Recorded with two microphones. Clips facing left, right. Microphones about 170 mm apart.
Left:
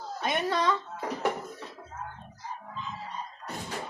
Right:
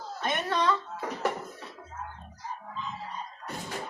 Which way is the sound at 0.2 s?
10° left (ahead or behind).